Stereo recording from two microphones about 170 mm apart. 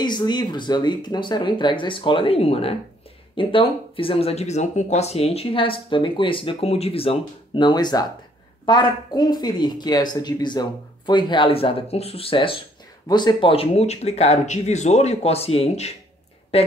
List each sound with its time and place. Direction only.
0.0 s speech: 25° left (ahead or behind)